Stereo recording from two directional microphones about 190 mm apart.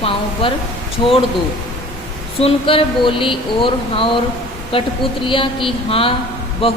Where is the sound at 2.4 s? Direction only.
30° left (ahead or behind).